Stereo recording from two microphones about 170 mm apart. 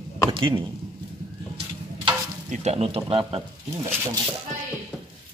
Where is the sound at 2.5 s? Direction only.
40° right (ahead or behind).